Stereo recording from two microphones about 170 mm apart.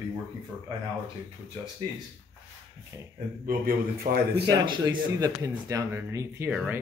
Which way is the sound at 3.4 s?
60° right (ahead or behind).